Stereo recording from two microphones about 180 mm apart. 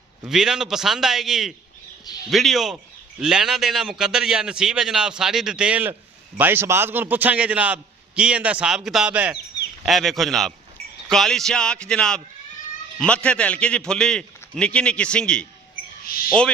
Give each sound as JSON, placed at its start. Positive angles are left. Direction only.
{"t": 0.3, "sound": "a man's voice", "side_deg": -5}
{"t": 16.0, "sound": "speech", "side_deg": 55}